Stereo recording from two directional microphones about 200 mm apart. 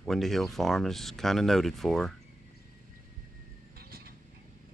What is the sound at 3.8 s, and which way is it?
Vehicle, 50° right (ahead or behind).